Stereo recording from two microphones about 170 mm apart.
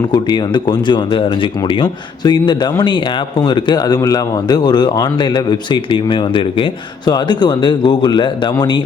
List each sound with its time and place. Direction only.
0.1 s speech: 25° left (ahead or behind)